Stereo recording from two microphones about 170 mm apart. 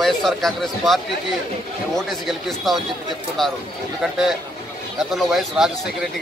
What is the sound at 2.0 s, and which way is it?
Speech, centre (ahead or behind).